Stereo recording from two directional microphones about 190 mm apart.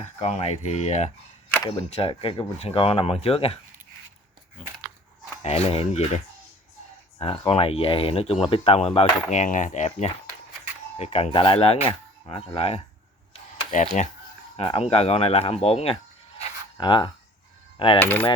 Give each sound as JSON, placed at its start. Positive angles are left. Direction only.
{"t": 0.0, "sound": "speech", "side_deg": 35}
{"t": 5.4, "sound": "speech", "side_deg": 35}
{"t": 13.7, "sound": "speech", "side_deg": 40}
{"t": 17.7, "sound": "mechanisms", "side_deg": 25}
{"t": 18.0, "sound": "cutlery", "side_deg": 10}